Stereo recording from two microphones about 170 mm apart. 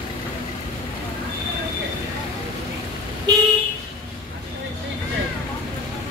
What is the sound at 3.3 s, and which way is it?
Vehicle, 25° right (ahead or behind).